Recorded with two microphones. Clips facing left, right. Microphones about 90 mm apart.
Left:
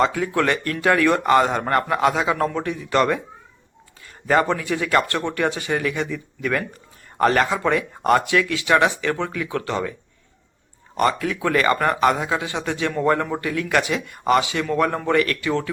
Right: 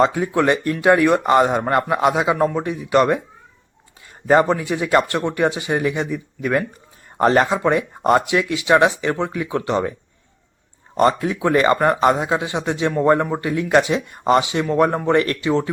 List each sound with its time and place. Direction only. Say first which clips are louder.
0.0 s a man's voice: right 3 dB; 20° right (ahead or behind)
4.3 s a man's voice: right 4 dB; 20° right (ahead or behind)
10.9 s a man's voice: right 4 dB; 25° right (ahead or behind)